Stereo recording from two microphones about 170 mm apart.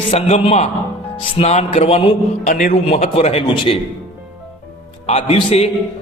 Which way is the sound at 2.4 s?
55° left (ahead or behind).